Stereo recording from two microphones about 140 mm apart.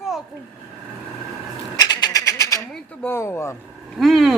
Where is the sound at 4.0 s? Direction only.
Centre (ahead or behind).